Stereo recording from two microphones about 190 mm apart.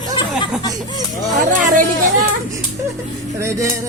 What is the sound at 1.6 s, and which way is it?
Speech, 45° right (ahead or behind).